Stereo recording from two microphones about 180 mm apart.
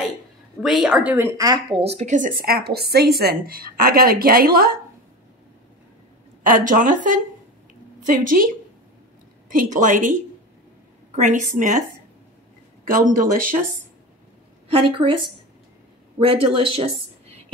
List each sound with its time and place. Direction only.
0.6 s speech: centre (ahead or behind); by 1.8 s 20° right (ahead or behind)
1.8 s a woman's voice: 35° right (ahead or behind); by 4.7 s 55° right (ahead or behind)
6.4 s speech: 45° right (ahead or behind)
8.2 s speech: 50° right (ahead or behind)
9.5 s speech: 45° right (ahead or behind)
11.1 s speech: 45° right (ahead or behind)
12.8 s speech: 50° right (ahead or behind)
15.0 s speech: 30° right (ahead or behind)
16.2 s a woman's voice: 30° right (ahead or behind)